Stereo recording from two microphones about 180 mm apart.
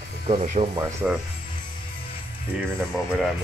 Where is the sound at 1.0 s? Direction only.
5° right (ahead or behind).